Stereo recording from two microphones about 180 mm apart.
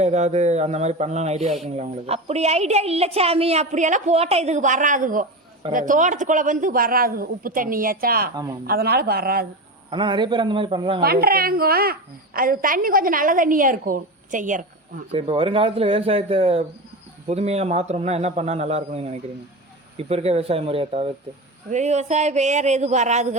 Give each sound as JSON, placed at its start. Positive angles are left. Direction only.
{"t": 0.0, "sound": "a woman's voice", "side_deg": -35}
{"t": 9.9, "sound": "a man's voice", "side_deg": -25}
{"t": 11.0, "sound": "a woman's voice", "side_deg": -60}
{"t": 15.1, "sound": "a woman's voice", "side_deg": -30}